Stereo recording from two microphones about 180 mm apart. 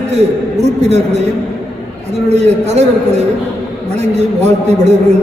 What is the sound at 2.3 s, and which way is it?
A man's voice, 40° right (ahead or behind).